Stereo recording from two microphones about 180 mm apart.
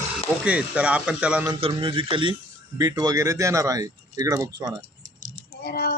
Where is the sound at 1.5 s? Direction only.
30° right (ahead or behind).